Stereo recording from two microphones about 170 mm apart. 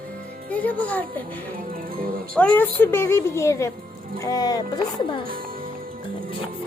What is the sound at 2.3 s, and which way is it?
A child's voice, 5° left (ahead or behind).